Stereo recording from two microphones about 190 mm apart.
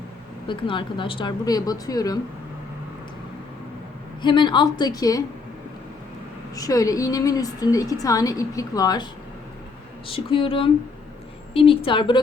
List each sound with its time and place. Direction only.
0.4 s speech: 25° left (ahead or behind)
4.2 s speech: 25° left (ahead or behind)
6.6 s a woman's voice: 20° left (ahead or behind)
10.1 s speech: 30° left (ahead or behind)